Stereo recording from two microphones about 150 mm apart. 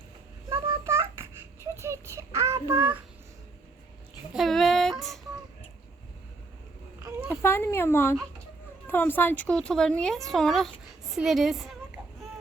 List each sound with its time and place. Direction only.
0.5 s a sound: 15° right (ahead or behind)
4.4 s female singing: centre (ahead or behind)
7.3 s a child's voice: 15° left (ahead or behind); by 11.8 s centre (ahead or behind)